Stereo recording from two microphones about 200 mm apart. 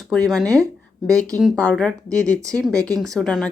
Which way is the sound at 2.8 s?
15° right (ahead or behind).